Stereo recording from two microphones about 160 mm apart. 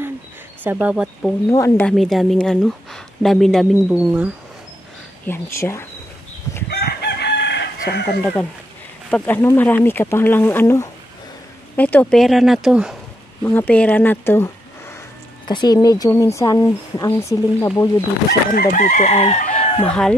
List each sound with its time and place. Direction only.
0.7 s speech: 5° right (ahead or behind)
1.5 s speech: 20° left (ahead or behind)
1.9 s speech: centre (ahead or behind)
3.9 s speech: 10° right (ahead or behind)
5.2 s speech: 15° left (ahead or behind)
6.7 s chicken: 90° left
9.1 s speech: 10° left (ahead or behind)
13.4 s speech: 10° left (ahead or behind)
15.4 s speech: 25° left (ahead or behind)
18.5 s chicken: 55° left (ahead or behind); by 19.8 s 35° left (ahead or behind)
19.8 s speech: 5° left (ahead or behind)